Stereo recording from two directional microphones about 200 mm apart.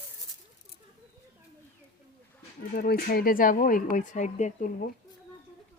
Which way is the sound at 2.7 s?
50° left (ahead or behind).